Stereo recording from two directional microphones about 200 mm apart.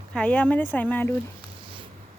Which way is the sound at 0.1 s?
5° left (ahead or behind).